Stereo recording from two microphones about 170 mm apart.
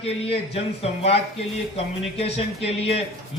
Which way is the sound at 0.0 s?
35° left (ahead or behind).